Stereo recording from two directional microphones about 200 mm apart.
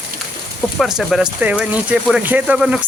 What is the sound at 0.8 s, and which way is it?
Speech, centre (ahead or behind).